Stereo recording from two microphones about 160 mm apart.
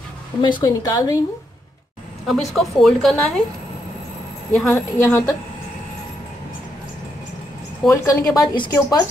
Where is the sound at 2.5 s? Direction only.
Centre (ahead or behind).